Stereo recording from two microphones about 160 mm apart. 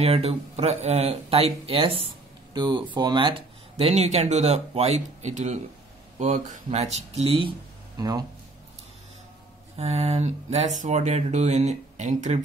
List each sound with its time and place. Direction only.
0.0 s speech: 40° right (ahead or behind)
8.0 s speech: 25° right (ahead or behind)
9.8 s speech: 40° right (ahead or behind)